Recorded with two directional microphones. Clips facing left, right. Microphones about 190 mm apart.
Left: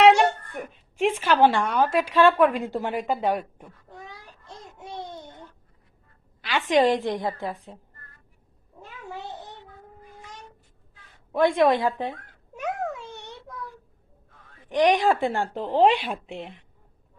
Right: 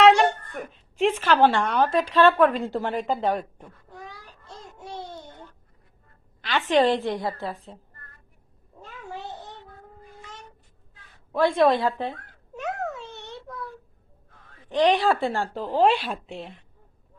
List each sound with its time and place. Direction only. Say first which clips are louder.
0.0 s a sound: even; 10° left (ahead or behind)
0.9 s speech: right 1 dB; 10° left (ahead or behind)
3.6 s cat: right 1 dB; 20° left (ahead or behind)
4.9 s babbling: left 1 dB; 15° left (ahead or behind)
6.4 s speech: even; 10° left (ahead or behind)
11.3 s a sound: even; 15° left (ahead or behind)
14.7 s speech: even; 15° left (ahead or behind)